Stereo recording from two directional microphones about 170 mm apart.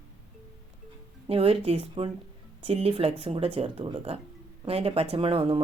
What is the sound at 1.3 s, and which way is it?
A woman's voice, 35° right (ahead or behind).